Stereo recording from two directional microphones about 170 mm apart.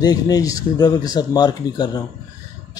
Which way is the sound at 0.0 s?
20° left (ahead or behind).